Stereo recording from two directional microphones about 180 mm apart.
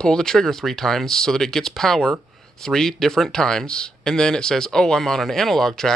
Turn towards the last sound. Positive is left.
turn(degrees=5)  # may be behind; listen again after turning